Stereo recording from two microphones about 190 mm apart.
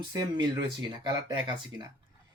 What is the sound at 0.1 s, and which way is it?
Speech, 25° right (ahead or behind).